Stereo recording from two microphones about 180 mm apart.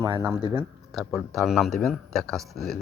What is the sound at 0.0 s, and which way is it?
Speech, 15° right (ahead or behind).